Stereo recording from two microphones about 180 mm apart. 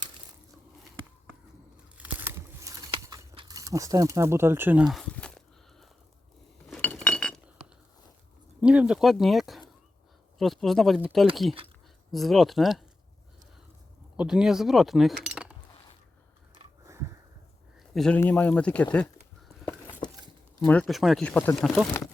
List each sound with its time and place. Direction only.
2.0 s a sound: 10° right (ahead or behind)
3.3 s speech: 25° right (ahead or behind); by 5.4 s 5° left (ahead or behind)
6.7 s cutlery: 5° left (ahead or behind)
8.6 s speech: 5° right (ahead or behind)
14.2 s speech: 5° right (ahead or behind)
15.2 s cutlery: 5° right (ahead or behind)
17.9 s speech: 5° left (ahead or behind)
20.7 s speech: 5° left (ahead or behind)